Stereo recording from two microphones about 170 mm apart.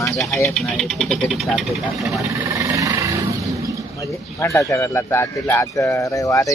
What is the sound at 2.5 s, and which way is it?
Music, 20° right (ahead or behind).